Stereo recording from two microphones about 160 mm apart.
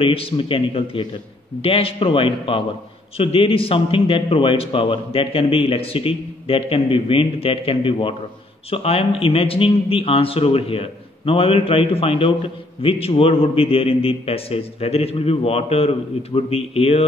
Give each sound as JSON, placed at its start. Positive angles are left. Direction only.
{"t": 0.0, "sound": "a man's voice", "side_deg": 35}